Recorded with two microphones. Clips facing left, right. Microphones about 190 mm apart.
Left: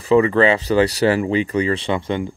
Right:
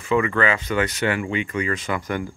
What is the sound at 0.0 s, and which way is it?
Speech, 35° left (ahead or behind).